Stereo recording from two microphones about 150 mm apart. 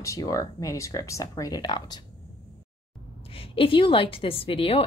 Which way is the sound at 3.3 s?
40° left (ahead or behind).